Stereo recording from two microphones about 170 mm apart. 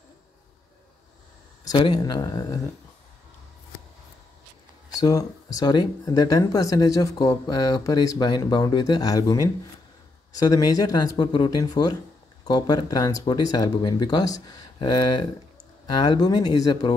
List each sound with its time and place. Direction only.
1.6 s speech: 25° left (ahead or behind)
5.0 s speech: 20° left (ahead or behind)